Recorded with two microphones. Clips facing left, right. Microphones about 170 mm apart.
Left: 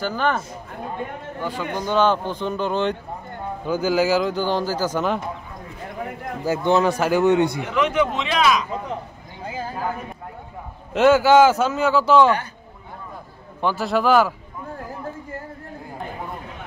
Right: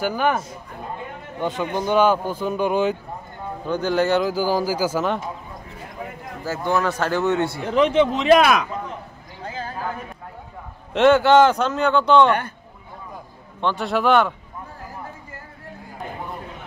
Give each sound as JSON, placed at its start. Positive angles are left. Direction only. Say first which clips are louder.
{"t": 0.0, "sound": "a man's voice", "louder": "right 2 dB", "side_deg": -10}
{"t": 1.4, "sound": "a man's voice", "louder": "right 3 dB", "side_deg": -20}
{"t": 3.6, "sound": "speech", "louder": "left 1 dB", "side_deg": 5}
{"t": 6.4, "sound": "a man's voice", "louder": "left 4 dB", "side_deg": 20}
{"t": 7.6, "sound": "a man's voice", "louder": "right 3 dB", "side_deg": -35}
{"t": 8.3, "sound": "speech", "louder": "right 5 dB", "side_deg": -55}
{"t": 9.4, "sound": "a sound", "louder": "left 1 dB", "side_deg": 10}
{"t": 10.9, "sound": "speech", "louder": "even", "side_deg": 5}
{"t": 13.6, "sound": "speech", "louder": "left 1 dB", "side_deg": 5}